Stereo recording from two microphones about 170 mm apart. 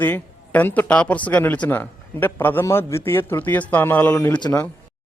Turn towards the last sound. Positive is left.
turn(degrees=20)  # may be behind; listen again after turning